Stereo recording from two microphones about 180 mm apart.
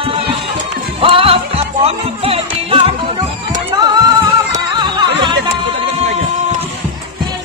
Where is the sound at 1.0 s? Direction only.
30° right (ahead or behind).